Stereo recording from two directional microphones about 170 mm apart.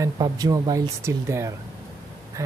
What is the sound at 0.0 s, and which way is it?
Speech, 20° right (ahead or behind).